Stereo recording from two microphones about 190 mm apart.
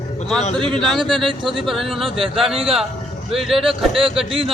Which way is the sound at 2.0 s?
30° right (ahead or behind).